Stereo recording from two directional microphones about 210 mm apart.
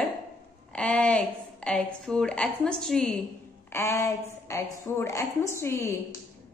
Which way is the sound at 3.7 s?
15° left (ahead or behind).